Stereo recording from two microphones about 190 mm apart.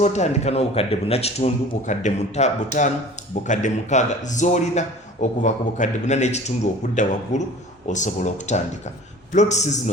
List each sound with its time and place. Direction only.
0.0 s a man's voice: 35° left (ahead or behind)